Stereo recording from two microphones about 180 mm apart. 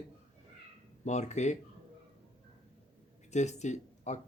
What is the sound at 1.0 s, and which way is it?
Speech, 40° left (ahead or behind).